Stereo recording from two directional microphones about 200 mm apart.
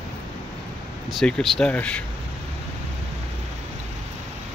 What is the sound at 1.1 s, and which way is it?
Speech, centre (ahead or behind).